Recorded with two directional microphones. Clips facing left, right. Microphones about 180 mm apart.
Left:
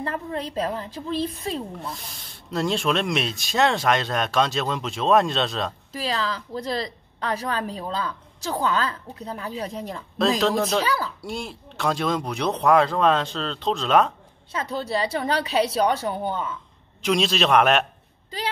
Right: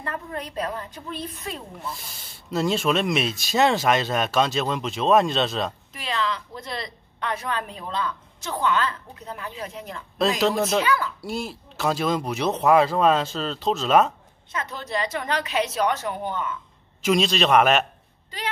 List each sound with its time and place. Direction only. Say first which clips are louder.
0.0 s a woman's voice: left 3 dB; 30° left (ahead or behind)
1.9 s speech: even; centre (ahead or behind)
5.9 s a woman's voice: left 1 dB; 35° left (ahead or behind)
10.4 s speech: even; 5° right (ahead or behind)
10.8 s a child's voice: right 1 dB; 35° left (ahead or behind)
11.1 s speech: right 2 dB; centre (ahead or behind)
14.5 s a woman's voice: left 3 dB; 30° left (ahead or behind)
17.0 s speech: right 1 dB; centre (ahead or behind)